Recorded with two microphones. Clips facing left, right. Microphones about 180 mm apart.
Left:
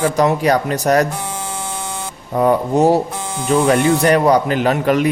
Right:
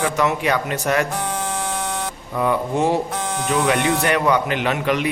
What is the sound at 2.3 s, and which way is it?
Speech, 40° left (ahead or behind).